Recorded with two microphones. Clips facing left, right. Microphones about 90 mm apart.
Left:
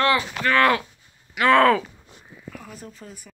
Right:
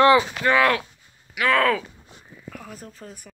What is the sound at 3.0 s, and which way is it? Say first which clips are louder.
Speech: right 1 dB; 40° right (ahead or behind).